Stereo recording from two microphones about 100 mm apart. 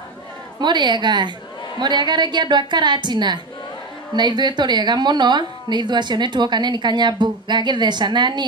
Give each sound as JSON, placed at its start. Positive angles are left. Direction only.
{"t": 0.6, "sound": "a woman's voice", "side_deg": -50}